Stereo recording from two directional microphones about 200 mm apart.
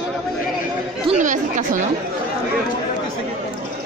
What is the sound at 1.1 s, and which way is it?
Speech, 40° right (ahead or behind).